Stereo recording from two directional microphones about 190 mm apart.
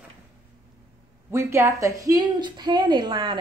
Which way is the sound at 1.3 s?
15° right (ahead or behind).